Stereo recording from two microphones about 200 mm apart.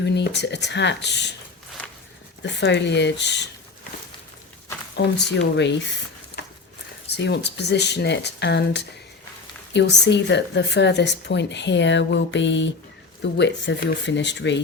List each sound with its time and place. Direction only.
0.0 s a woman's voice: 60° left (ahead or behind)
2.4 s a woman's voice: 60° left (ahead or behind)
5.0 s a woman's voice: 60° left (ahead or behind)
7.1 s a woman's voice: 60° left (ahead or behind)